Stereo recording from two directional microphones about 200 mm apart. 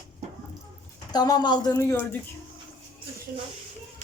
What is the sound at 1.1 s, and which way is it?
Speech, 20° left (ahead or behind).